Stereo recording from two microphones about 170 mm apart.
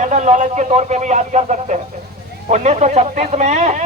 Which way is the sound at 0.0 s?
45° right (ahead or behind).